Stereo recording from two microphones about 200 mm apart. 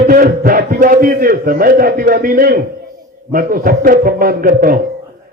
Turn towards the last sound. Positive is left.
turn(degrees=-45)  # may be behind; listen again after turning